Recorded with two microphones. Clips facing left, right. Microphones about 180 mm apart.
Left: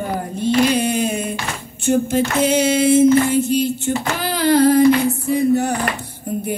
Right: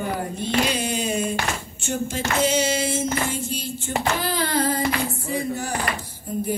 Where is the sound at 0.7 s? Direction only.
55° left (ahead or behind).